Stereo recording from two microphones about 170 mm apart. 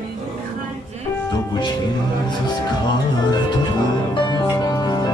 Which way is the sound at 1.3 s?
25° left (ahead or behind).